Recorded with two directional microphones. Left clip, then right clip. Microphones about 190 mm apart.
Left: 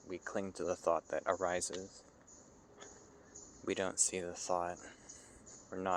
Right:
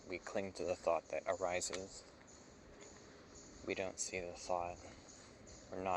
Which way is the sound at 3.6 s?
50° left (ahead or behind).